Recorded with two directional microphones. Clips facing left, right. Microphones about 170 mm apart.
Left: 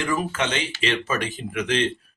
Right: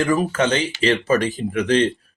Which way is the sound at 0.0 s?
40° right (ahead or behind).